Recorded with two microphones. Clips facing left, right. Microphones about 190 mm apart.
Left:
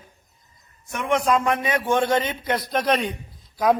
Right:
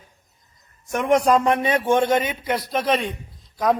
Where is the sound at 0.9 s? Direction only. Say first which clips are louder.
Right 4 dB; 40° right (ahead or behind).